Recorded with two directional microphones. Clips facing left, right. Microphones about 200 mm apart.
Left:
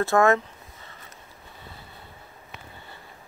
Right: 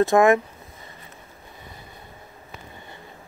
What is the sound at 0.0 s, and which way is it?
Speech, 15° right (ahead or behind).